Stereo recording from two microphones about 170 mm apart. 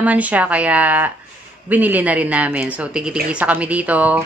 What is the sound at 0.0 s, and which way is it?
Speech, 10° right (ahead or behind).